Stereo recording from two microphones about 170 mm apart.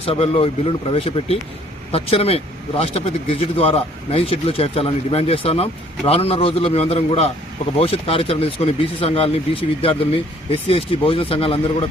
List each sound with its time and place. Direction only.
0.0 s speech: 35° left (ahead or behind)